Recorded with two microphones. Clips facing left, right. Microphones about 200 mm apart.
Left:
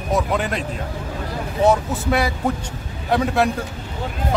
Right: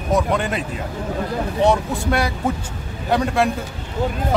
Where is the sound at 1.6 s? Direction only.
Centre (ahead or behind).